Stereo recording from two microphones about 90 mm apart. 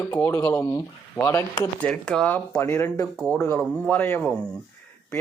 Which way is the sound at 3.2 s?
10° left (ahead or behind).